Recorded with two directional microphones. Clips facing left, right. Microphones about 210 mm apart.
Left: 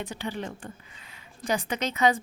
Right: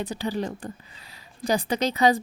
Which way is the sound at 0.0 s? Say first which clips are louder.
Right 5 dB; 35° right (ahead or behind).